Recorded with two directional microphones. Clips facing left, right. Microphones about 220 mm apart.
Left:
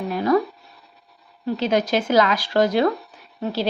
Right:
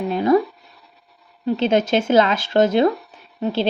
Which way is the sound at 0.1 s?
25° right (ahead or behind).